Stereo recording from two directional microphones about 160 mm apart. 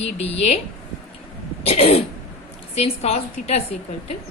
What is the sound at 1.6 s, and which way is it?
A woman's voice, 40° left (ahead or behind).